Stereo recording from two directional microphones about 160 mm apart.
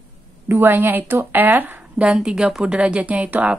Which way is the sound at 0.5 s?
15° right (ahead or behind).